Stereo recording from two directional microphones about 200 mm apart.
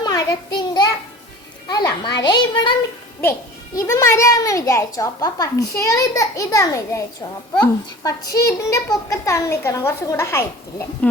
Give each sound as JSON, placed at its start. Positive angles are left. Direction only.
{"t": 0.0, "sound": "a sound", "side_deg": 20}
{"t": 1.6, "sound": "a child's voice", "side_deg": 20}
{"t": 3.8, "sound": "a child's voice", "side_deg": 15}